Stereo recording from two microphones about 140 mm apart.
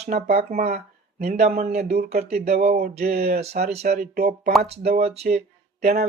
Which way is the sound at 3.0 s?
90° right.